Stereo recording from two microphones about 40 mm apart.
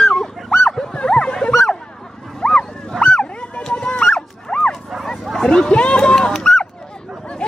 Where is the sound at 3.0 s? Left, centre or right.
Left.